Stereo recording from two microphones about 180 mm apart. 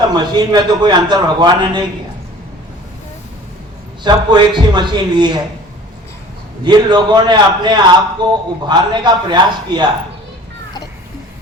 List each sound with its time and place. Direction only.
0.1 s a man's voice: 25° right (ahead or behind)
4.0 s a man's voice: 25° right (ahead or behind)
6.7 s a man's voice: 25° right (ahead or behind)